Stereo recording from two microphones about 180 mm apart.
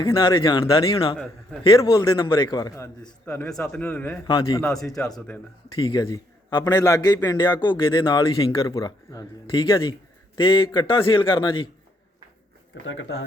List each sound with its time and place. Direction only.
0.0 s a man's voice: 30° left (ahead or behind)
3.2 s a man's voice: 5° left (ahead or behind)
4.3 s a man's voice: 25° left (ahead or behind)
4.6 s speech: centre (ahead or behind)
5.7 s a man's voice: 25° left (ahead or behind)
12.8 s speech: 90° left